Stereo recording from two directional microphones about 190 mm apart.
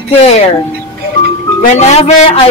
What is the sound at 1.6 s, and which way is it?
Speech, 35° left (ahead or behind).